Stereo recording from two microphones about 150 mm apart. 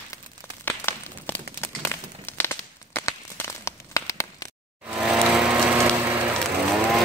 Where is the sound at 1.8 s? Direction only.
15° left (ahead or behind).